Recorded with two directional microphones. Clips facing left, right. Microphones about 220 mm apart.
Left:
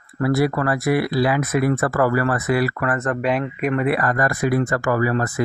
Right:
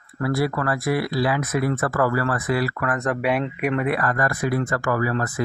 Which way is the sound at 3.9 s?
15° left (ahead or behind).